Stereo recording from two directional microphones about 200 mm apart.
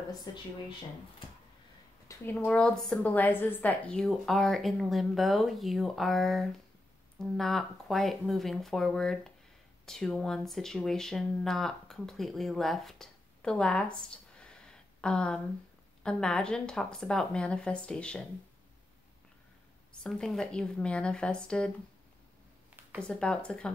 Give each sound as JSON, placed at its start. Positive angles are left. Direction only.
{"t": 0.3, "sound": "speech", "side_deg": 20}
{"t": 2.0, "sound": "a woman's voice", "side_deg": 10}
{"t": 19.9, "sound": "a woman's voice", "side_deg": 5}
{"t": 22.8, "sound": "a sound", "side_deg": -10}
{"t": 23.0, "sound": "a woman's voice", "side_deg": 5}